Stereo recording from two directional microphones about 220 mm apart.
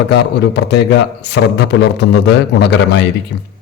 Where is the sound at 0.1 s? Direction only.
50° left (ahead or behind).